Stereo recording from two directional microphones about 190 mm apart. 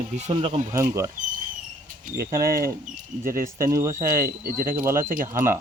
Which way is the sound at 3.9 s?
50° right (ahead or behind).